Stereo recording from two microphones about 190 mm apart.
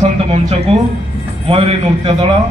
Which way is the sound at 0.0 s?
35° right (ahead or behind).